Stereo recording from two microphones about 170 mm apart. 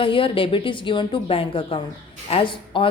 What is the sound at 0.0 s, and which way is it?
A woman's voice, 30° left (ahead or behind).